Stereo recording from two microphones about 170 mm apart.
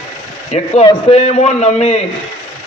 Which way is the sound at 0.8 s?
35° left (ahead or behind).